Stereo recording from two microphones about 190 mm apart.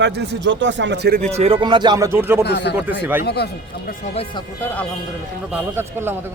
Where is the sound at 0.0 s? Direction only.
60° right (ahead or behind).